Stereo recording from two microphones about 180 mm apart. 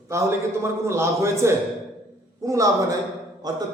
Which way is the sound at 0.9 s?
15° right (ahead or behind).